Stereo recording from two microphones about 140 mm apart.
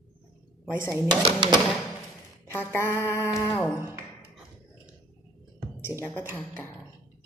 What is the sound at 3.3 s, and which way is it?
Speech, 20° left (ahead or behind).